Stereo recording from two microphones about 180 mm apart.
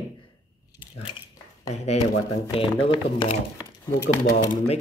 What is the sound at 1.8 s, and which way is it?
Speech, 35° left (ahead or behind).